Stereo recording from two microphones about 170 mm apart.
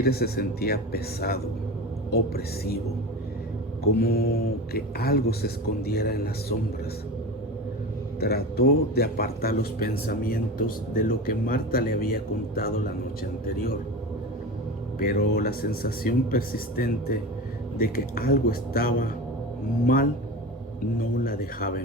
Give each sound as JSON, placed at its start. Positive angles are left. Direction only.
{"t": 0.0, "sound": "a man's voice", "side_deg": 65}
{"t": 3.9, "sound": "a man's voice", "side_deg": 65}
{"t": 8.2, "sound": "a man's voice", "side_deg": 65}
{"t": 14.9, "sound": "a man's voice", "side_deg": 60}
{"t": 21.0, "sound": "a man's voice", "side_deg": 55}